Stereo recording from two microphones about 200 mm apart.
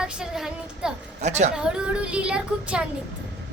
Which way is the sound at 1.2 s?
35° right (ahead or behind).